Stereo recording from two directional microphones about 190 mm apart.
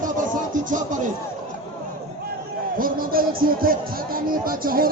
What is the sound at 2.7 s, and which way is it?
Speech, 50° right (ahead or behind).